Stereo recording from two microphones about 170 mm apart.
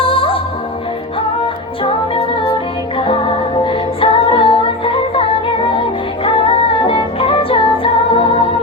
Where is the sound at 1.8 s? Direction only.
30° left (ahead or behind).